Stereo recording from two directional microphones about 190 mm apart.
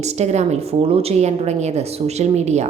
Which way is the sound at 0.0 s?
35° right (ahead or behind).